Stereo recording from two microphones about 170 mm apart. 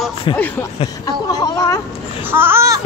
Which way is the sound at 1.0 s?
20° left (ahead or behind).